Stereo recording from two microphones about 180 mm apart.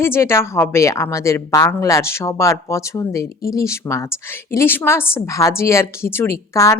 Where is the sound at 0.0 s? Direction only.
15° left (ahead or behind).